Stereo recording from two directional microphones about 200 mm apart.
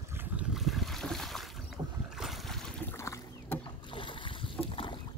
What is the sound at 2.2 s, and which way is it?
Rowboat, centre (ahead or behind).